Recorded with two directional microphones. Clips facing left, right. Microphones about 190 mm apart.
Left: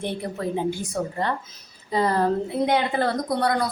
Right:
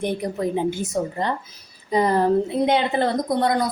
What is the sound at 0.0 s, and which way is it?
A woman's voice, 15° right (ahead or behind).